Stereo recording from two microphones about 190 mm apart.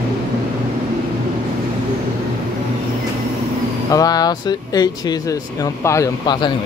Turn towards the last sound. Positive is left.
turn(degrees=20)  # may be behind; listen again after turning